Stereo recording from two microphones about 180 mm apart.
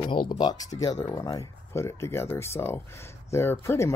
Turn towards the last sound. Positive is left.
turn(degrees=15)  # may be behind; listen again after turning